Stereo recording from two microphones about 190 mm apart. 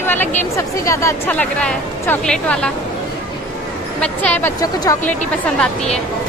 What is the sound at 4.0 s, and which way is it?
Speech, 5° left (ahead or behind).